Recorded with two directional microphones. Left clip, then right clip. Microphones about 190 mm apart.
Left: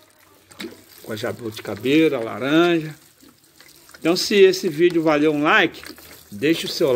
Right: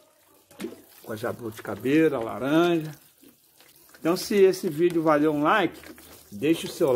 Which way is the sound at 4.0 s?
10° left (ahead or behind).